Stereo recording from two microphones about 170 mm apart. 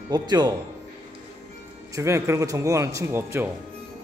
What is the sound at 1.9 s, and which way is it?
Speech, 15° right (ahead or behind).